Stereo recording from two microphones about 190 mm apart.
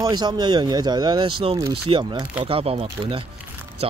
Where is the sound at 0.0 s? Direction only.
20° right (ahead or behind).